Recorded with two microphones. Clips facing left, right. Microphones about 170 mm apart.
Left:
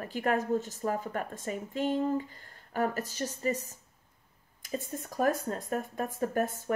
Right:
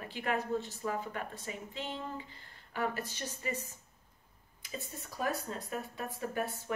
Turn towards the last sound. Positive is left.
turn(degrees=45)  # may be behind; listen again after turning